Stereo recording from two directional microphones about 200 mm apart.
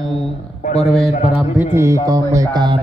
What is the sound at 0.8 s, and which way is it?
Speech, 5° left (ahead or behind).